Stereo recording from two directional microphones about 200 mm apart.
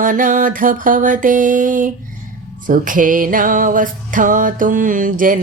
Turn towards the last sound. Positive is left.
turn(degrees=-40)  # may be behind; listen again after turning